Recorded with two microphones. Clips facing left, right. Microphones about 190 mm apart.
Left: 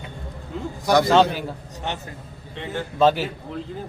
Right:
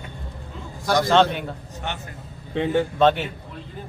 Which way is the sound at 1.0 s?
5° left (ahead or behind).